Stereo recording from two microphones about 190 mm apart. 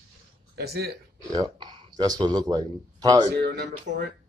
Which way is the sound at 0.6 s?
55° right (ahead or behind).